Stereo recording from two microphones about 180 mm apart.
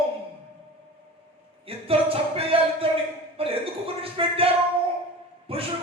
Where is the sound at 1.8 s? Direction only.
30° right (ahead or behind).